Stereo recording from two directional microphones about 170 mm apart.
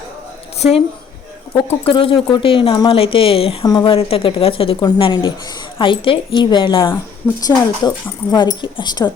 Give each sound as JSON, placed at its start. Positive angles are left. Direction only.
{"t": 1.5, "sound": "speech", "side_deg": 35}